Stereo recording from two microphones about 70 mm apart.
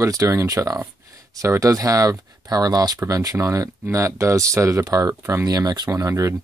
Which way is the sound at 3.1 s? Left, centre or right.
Right.